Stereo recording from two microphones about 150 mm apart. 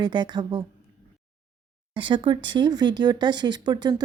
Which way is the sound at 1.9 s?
35° right (ahead or behind).